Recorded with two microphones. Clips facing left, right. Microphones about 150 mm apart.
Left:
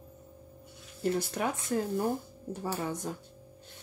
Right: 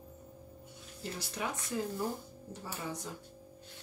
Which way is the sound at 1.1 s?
50° left (ahead or behind).